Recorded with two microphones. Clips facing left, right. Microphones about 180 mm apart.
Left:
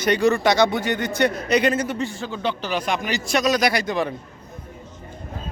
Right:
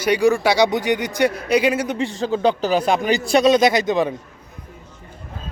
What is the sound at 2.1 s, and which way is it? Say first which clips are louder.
A man's voice: right 8 dB; 35° right (ahead or behind).